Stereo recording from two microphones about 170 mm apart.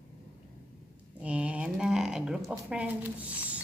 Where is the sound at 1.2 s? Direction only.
5° right (ahead or behind).